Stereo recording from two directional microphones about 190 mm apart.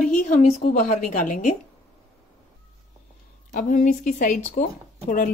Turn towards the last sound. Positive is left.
turn(degrees=45)  # may be behind; listen again after turning